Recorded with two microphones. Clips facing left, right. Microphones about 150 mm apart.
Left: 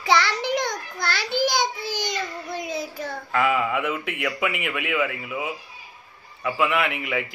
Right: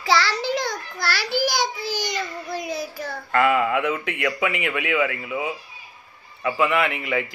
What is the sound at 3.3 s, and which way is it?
A man's voice, 5° left (ahead or behind).